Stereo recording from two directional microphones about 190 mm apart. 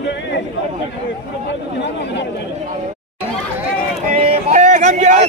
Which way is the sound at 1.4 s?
65° left (ahead or behind).